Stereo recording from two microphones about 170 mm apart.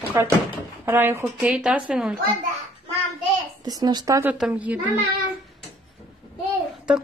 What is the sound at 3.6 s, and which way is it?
Speech, 20° right (ahead or behind).